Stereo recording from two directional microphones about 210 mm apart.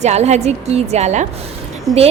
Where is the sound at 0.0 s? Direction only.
30° right (ahead or behind).